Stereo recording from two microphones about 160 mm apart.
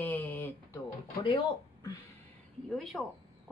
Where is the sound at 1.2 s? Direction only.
25° left (ahead or behind).